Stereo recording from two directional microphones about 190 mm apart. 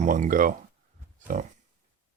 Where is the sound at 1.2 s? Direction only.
40° right (ahead or behind).